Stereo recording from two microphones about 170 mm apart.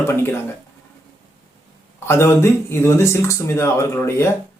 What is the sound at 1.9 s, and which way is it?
Speech, 15° left (ahead or behind).